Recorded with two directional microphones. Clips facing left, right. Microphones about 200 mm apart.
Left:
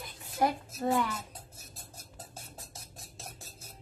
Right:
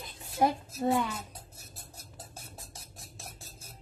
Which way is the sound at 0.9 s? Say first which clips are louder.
Even; 10° right (ahead or behind).